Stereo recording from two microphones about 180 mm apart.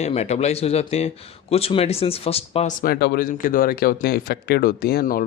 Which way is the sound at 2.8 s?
60° left (ahead or behind).